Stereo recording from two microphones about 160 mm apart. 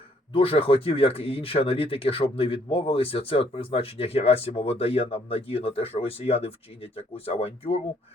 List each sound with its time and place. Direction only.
0.3 s speech: 35° left (ahead or behind)